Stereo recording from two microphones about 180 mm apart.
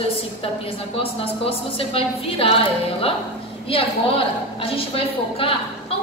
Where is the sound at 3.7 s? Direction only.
30° left (ahead or behind).